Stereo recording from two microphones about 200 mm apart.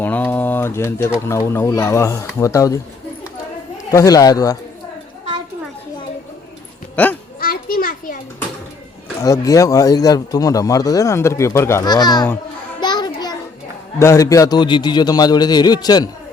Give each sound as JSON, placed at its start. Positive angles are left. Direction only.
{"t": 0.0, "sound": "a sound", "side_deg": 10}
{"t": 1.3, "sound": "a man's voice", "side_deg": 15}
{"t": 3.9, "sound": "a man's voice", "side_deg": 15}
{"t": 6.9, "sound": "a sound", "side_deg": 10}
{"t": 7.3, "sound": "children playing", "side_deg": 45}
{"t": 9.2, "sound": "a man's voice", "side_deg": 15}
{"t": 12.8, "sound": "music", "side_deg": 20}
{"t": 14.0, "sound": "a man's voice", "side_deg": 15}